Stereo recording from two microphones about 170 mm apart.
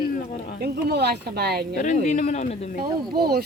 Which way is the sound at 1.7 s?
45° left (ahead or behind).